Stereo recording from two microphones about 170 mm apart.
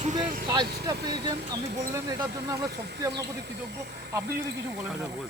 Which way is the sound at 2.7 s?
75° right (ahead or behind).